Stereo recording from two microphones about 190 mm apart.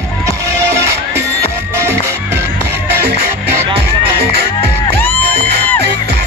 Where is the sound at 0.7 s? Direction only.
15° right (ahead or behind).